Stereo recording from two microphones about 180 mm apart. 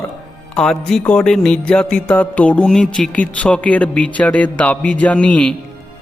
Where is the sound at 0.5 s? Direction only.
5° left (ahead or behind).